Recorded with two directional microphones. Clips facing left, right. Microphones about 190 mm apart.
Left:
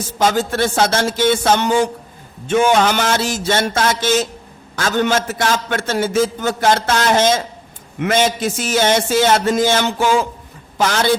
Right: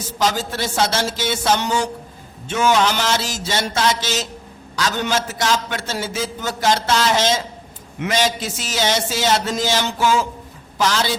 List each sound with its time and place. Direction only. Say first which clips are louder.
0.2 s a man's voice: left 5 dB; 55° left (ahead or behind)